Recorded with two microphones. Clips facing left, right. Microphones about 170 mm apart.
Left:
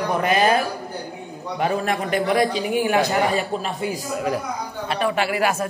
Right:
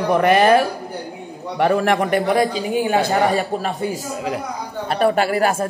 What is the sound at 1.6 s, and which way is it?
Speech, 70° right (ahead or behind).